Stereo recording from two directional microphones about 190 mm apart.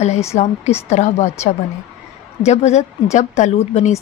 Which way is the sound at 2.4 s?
35° left (ahead or behind).